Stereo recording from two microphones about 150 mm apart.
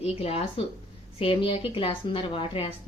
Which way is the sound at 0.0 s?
40° left (ahead or behind).